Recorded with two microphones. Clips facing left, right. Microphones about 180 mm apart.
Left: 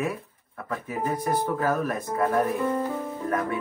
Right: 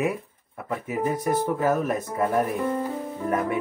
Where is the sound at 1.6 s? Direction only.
20° right (ahead or behind).